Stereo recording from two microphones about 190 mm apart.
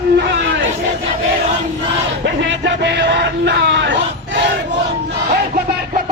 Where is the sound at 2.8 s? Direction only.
65° right (ahead or behind).